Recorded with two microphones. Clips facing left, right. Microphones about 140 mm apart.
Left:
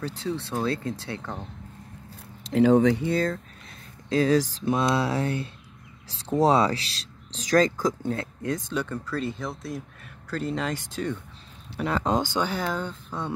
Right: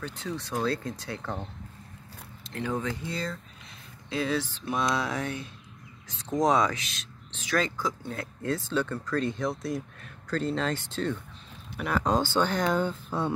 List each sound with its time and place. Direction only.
0.0 s speech: 30° left (ahead or behind)
0.7 s mantra: 25° left (ahead or behind)
2.4 s speech: 85° left; by 4.6 s 40° left (ahead or behind)
4.6 s mantra: 25° left (ahead or behind)
6.0 s speech: 35° left (ahead or behind)
8.2 s speech: 20° left (ahead or behind)
11.7 s speech: 25° left (ahead or behind); by 13.3 s 5° right (ahead or behind)